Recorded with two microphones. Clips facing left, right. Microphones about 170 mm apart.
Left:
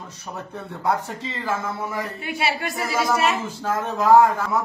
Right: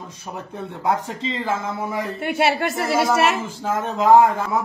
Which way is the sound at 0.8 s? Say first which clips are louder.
Right 2 dB; 20° right (ahead or behind).